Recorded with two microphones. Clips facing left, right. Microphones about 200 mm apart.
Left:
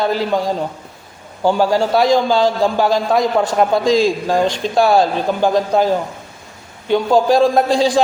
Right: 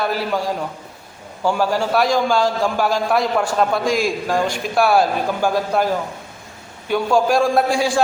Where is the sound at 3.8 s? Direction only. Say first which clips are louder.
Left 6 dB; 90° left.